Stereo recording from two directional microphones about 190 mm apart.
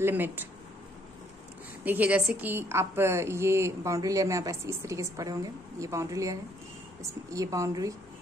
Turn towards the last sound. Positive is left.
turn(degrees=-15)  # may be behind; listen again after turning